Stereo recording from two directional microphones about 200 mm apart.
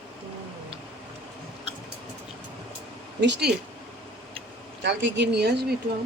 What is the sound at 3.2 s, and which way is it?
Speech, 60° right (ahead or behind).